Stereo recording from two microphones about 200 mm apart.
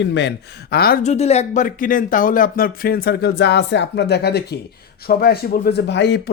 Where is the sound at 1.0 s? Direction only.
35° left (ahead or behind).